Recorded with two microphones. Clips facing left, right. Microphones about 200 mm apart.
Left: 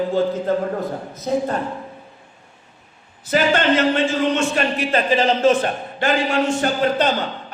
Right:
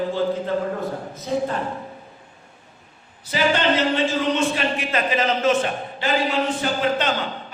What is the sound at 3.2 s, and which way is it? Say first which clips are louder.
Speech: left 3 dB; 50° left (ahead or behind).